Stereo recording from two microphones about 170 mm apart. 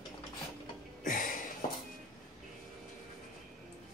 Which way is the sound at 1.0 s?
55° left (ahead or behind).